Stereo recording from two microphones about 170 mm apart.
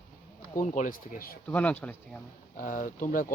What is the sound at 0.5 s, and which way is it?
Speech, 50° left (ahead or behind).